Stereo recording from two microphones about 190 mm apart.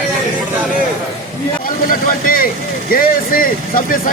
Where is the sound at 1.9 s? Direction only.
50° left (ahead or behind).